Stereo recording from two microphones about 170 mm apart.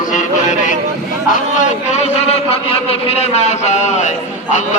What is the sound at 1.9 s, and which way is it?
A man's voice, 40° left (ahead or behind).